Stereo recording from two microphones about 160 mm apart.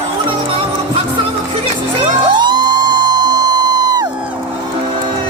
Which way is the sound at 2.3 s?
25° right (ahead or behind).